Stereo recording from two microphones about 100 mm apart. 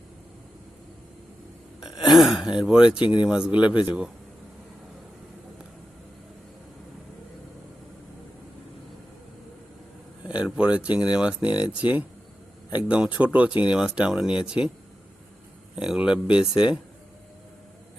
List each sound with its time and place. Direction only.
1.8 s speech: 5° right (ahead or behind)
2.9 s speech: 50° left (ahead or behind)
3.2 s speech: 10° right (ahead or behind)
10.2 s a sound: 10° right (ahead or behind)
10.6 s speech: 10° right (ahead or behind)
15.7 s speech: 10° right (ahead or behind)